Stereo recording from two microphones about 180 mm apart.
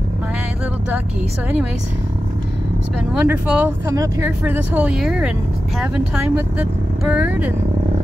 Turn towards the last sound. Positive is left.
turn(degrees=-10)  # may be behind; listen again after turning